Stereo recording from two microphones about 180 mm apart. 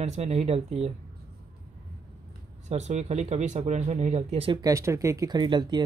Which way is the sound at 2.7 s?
40° right (ahead or behind).